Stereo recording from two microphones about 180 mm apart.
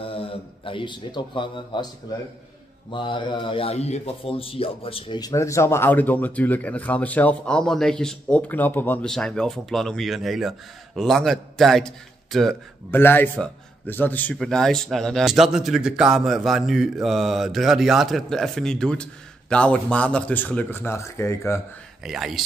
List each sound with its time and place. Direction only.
0.0 s speech: 30° left (ahead or behind)
2.9 s a man's voice: 25° left (ahead or behind); by 12.5 s centre (ahead or behind)
12.9 s a man's voice: 10° left (ahead or behind)
22.0 s a man's voice: centre (ahead or behind)